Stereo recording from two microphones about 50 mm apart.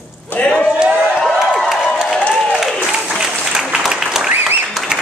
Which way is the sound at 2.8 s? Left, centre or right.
Centre.